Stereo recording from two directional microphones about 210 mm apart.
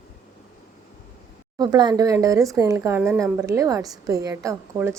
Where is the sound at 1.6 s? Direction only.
20° right (ahead or behind).